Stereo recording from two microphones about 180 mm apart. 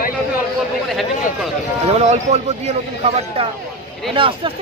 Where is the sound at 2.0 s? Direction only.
40° right (ahead or behind).